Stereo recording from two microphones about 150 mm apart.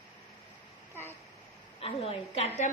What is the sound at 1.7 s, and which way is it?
Speech, 40° left (ahead or behind).